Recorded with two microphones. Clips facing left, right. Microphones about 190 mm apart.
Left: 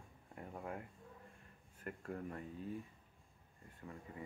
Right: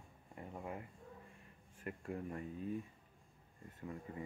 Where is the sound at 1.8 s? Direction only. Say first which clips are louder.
Right 1 dB; 10° right (ahead or behind).